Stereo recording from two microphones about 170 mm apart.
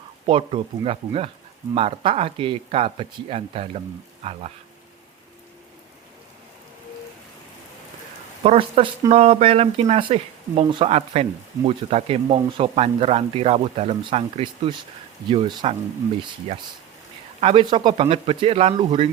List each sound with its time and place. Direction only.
0.3 s speech: 30° right (ahead or behind)
8.4 s speech: 35° right (ahead or behind)
17.4 s speech: 30° right (ahead or behind)